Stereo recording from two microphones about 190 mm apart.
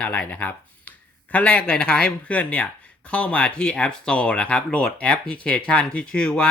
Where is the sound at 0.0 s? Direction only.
5° left (ahead or behind).